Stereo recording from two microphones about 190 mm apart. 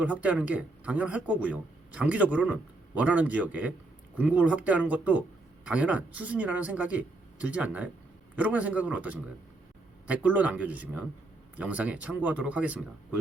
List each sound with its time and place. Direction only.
0.0 s speech: 5° right (ahead or behind)